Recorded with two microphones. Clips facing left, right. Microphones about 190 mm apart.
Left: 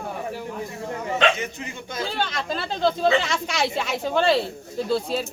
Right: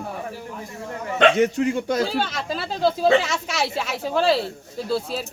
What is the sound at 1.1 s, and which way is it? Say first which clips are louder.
Speech: right 7 dB; 60° right (ahead or behind).